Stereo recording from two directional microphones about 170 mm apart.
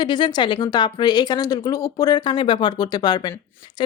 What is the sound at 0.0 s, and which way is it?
Speech, 25° left (ahead or behind).